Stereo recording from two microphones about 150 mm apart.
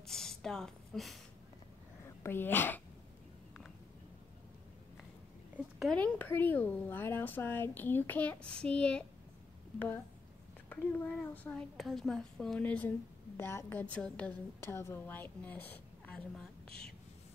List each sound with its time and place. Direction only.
0.0 s a sound: 5° left (ahead or behind)
2.2 s speech: 15° left (ahead or behind)
5.8 s speech: 5° left (ahead or behind)
10.7 s a woman's voice: 15° left (ahead or behind)